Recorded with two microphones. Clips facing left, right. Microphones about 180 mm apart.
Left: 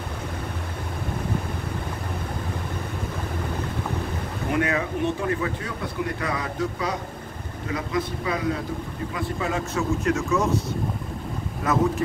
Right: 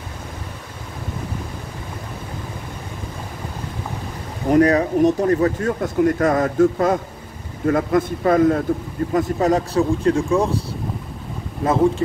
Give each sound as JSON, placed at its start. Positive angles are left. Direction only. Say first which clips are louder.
{"t": 4.5, "sound": "speech", "louder": "right 10 dB", "side_deg": -40}
{"t": 11.6, "sound": "speech", "louder": "right 6 dB", "side_deg": -30}